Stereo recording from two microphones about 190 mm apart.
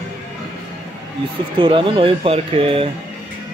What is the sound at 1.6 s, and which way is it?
Speech, 25° right (ahead or behind).